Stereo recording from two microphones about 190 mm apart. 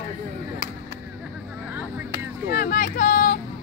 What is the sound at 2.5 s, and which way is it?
Vehicle, 50° left (ahead or behind).